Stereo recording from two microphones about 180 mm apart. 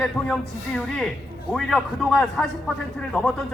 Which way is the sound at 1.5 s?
Centre (ahead or behind).